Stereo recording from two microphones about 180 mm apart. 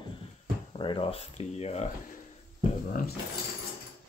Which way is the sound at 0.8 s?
30° left (ahead or behind).